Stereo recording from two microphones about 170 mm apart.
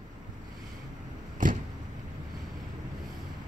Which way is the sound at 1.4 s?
50° right (ahead or behind).